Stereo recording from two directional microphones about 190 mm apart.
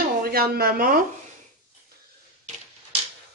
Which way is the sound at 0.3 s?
55° right (ahead or behind).